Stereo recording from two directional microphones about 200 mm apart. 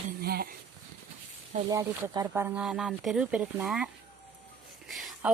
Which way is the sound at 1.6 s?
20° right (ahead or behind).